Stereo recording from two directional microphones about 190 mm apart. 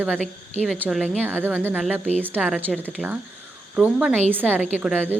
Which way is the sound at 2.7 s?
5° left (ahead or behind).